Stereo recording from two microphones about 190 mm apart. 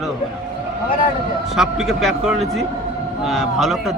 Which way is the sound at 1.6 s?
Centre (ahead or behind).